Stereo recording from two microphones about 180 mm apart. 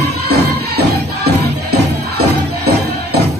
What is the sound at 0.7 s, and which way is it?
Music, 65° right (ahead or behind).